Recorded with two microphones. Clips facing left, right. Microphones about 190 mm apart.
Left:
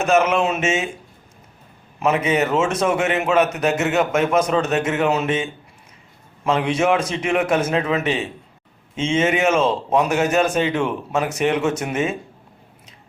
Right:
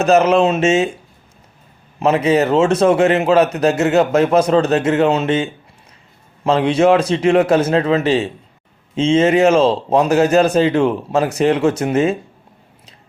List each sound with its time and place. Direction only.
0.0 s a man's voice: 35° right (ahead or behind)
2.0 s a man's voice: 30° right (ahead or behind)